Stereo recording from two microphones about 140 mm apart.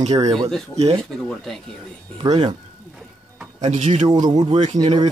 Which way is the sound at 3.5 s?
55° right (ahead or behind).